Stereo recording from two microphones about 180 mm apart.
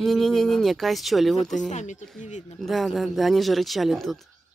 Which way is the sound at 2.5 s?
Centre (ahead or behind).